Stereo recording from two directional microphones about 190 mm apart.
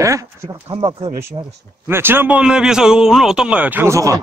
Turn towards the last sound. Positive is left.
turn(degrees=-15)  # may be behind; listen again after turning